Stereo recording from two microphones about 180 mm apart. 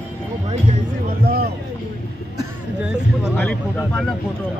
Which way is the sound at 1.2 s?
55° right (ahead or behind).